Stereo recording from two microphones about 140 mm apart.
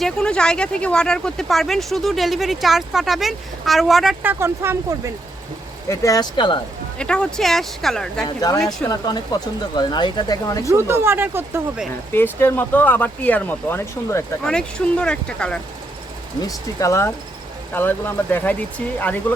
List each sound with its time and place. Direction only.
0.0 s speech: 5° left (ahead or behind)
4.2 s speech: 15° right (ahead or behind)
5.9 s speech: 25° left (ahead or behind)
7.0 s speech: 5° left (ahead or behind)
8.9 s speech: 30° left (ahead or behind)
10.7 s speech: 20° right (ahead or behind)
12.1 s speech: 15° left (ahead or behind)
14.4 s speech: 5° left (ahead or behind)
16.4 s speech: 25° left (ahead or behind)